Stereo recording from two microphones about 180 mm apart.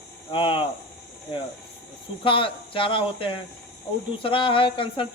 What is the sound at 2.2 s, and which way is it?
A man's voice, 30° left (ahead or behind).